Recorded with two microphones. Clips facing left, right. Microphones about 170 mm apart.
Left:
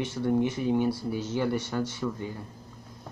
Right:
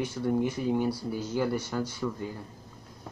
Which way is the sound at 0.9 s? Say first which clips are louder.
Left 1 dB; 25° left (ahead or behind).